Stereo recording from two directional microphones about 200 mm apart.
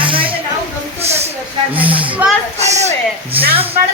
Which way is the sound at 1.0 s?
30° right (ahead or behind).